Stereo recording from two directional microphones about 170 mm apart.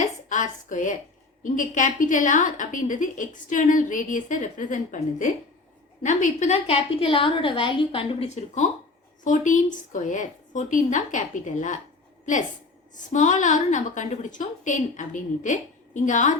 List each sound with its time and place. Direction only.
0.0 s dishes: 45° left (ahead or behind)
1.5 s a woman's voice: 50° left (ahead or behind)